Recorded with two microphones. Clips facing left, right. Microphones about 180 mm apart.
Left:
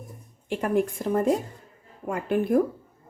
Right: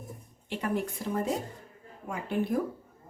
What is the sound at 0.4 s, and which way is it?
A woman's voice, 50° left (ahead or behind).